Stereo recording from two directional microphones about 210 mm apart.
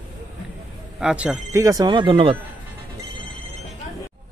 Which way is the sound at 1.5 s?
15° right (ahead or behind).